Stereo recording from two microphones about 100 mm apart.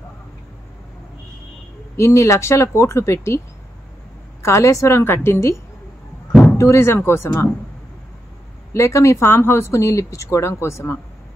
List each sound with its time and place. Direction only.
2.0 s speech: 30° left (ahead or behind)
4.4 s speech: 30° left (ahead or behind)
6.6 s speech: 25° left (ahead or behind)
8.7 s speech: 30° left (ahead or behind)